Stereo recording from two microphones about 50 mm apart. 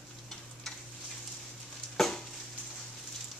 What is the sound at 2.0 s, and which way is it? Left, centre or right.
Stir, centre.